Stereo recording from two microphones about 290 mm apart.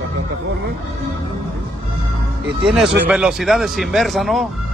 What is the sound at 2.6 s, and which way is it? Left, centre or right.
Speech, centre.